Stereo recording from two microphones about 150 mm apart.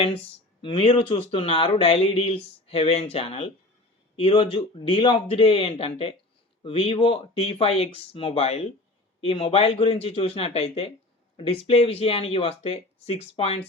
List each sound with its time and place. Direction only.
0.6 s speech: 40° left (ahead or behind)